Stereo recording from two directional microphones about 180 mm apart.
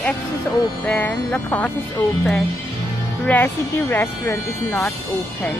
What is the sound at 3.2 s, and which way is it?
Speech, 10° left (ahead or behind).